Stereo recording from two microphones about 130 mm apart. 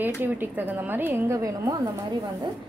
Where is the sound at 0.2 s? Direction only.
15° right (ahead or behind).